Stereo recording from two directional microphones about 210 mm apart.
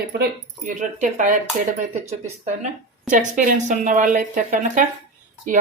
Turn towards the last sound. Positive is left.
turn(degrees=-40)  # may be behind; listen again after turning